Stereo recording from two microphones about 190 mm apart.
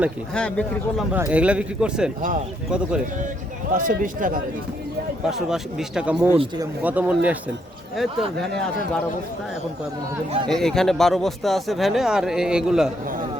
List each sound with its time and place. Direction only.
0.3 s a man's voice: 5° left (ahead or behind)
1.1 s a man's voice: 10° right (ahead or behind)
3.7 s speech: 45° right (ahead or behind)
5.3 s a man's voice: 5° right (ahead or behind)
10.5 s a man's voice: centre (ahead or behind)